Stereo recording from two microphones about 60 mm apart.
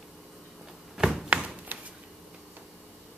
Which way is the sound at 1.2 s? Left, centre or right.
Right.